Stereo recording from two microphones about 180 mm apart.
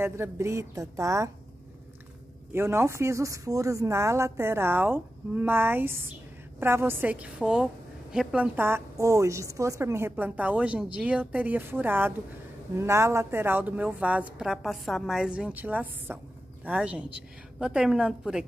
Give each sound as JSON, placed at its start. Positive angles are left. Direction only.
{"t": 0.0, "sound": "a woman's voice", "side_deg": -15}
{"t": 2.5, "sound": "a woman's voice", "side_deg": -15}